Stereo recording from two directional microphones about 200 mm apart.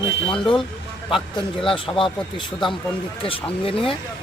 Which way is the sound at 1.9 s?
15° left (ahead or behind).